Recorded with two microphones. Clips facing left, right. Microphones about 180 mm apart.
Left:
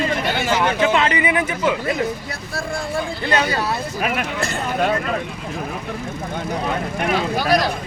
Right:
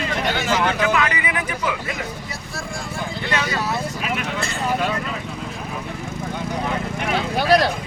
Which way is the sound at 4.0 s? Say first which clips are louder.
Left 3 dB; 55° left (ahead or behind).